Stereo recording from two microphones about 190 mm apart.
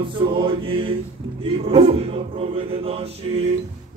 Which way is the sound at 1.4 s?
30° right (ahead or behind).